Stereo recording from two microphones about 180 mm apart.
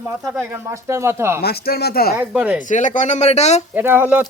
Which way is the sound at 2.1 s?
5° right (ahead or behind).